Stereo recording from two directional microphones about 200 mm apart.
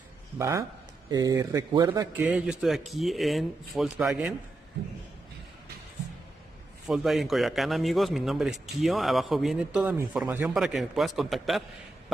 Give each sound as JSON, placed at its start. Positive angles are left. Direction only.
{"t": 0.4, "sound": "speech", "side_deg": -15}
{"t": 2.1, "sound": "a man's voice", "side_deg": -5}
{"t": 6.9, "sound": "a man's voice", "side_deg": 0}